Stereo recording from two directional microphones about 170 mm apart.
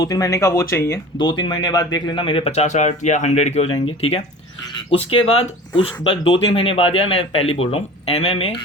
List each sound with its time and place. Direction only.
0.0 s speech: 20° left (ahead or behind)
1.3 s speech: 25° left (ahead or behind)